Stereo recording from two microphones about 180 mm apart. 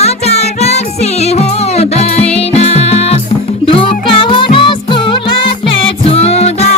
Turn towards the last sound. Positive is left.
turn(degrees=35)  # may be behind; listen again after turning